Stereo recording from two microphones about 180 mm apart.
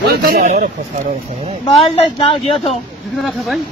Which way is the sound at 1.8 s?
30° left (ahead or behind).